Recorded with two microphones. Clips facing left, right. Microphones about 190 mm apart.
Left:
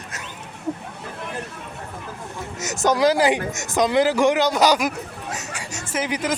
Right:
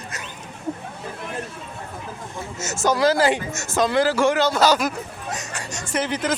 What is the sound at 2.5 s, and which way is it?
Speech, 15° left (ahead or behind).